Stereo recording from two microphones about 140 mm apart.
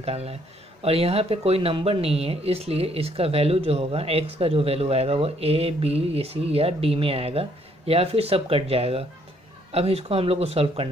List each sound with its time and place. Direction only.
0.0 s speech: 45° right (ahead or behind)